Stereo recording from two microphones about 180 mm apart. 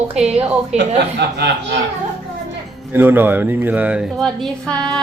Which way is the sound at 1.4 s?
70° right (ahead or behind).